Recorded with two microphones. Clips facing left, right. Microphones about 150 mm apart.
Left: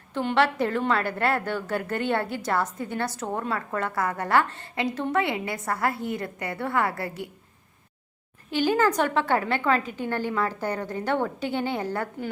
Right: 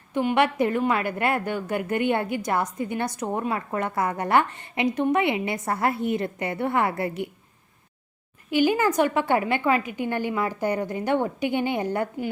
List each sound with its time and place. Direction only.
0.1 s a woman's voice: 15° right (ahead or behind)
8.4 s a woman's voice: 10° right (ahead or behind)